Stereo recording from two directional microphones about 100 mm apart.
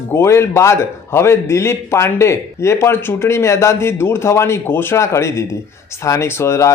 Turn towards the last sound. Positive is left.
turn(degrees=30)  # may be behind; listen again after turning